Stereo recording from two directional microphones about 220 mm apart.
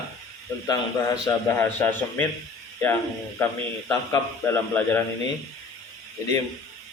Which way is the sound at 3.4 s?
10° left (ahead or behind).